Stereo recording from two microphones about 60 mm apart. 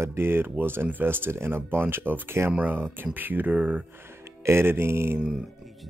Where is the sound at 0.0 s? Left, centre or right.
Right.